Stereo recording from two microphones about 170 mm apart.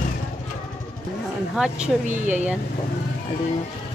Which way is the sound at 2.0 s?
45° right (ahead or behind).